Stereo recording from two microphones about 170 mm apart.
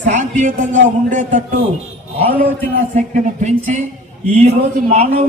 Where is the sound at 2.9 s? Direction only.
45° right (ahead or behind).